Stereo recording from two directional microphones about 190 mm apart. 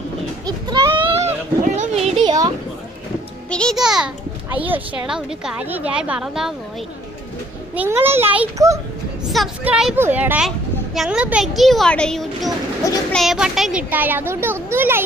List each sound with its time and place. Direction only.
0.4 s a sound: 20° right (ahead or behind)
2.2 s a child's voice: 20° right (ahead or behind)
3.5 s a child's voice: 5° left (ahead or behind)
7.8 s a child's voice: 10° right (ahead or behind)
9.3 s a child's voice: centre (ahead or behind)
12.8 s a child's voice: 15° left (ahead or behind)
13.1 s a child's voice: centre (ahead or behind)